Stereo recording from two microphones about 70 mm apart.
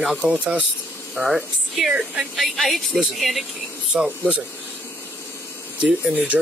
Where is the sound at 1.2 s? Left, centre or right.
Centre.